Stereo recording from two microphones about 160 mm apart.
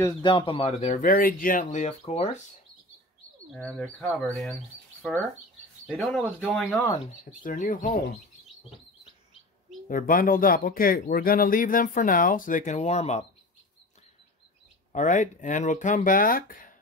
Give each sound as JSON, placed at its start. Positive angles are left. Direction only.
{"t": 0.0, "sound": "speech", "side_deg": 30}
{"t": 0.7, "sound": "speech", "side_deg": 45}
{"t": 1.0, "sound": "speech", "side_deg": 65}
{"t": 3.5, "sound": "speech", "side_deg": 5}
{"t": 5.9, "sound": "speech", "side_deg": 0}
{"t": 7.4, "sound": "speech", "side_deg": 55}
{"t": 9.8, "sound": "speech", "side_deg": 60}
{"t": 14.9, "sound": "speech", "side_deg": 50}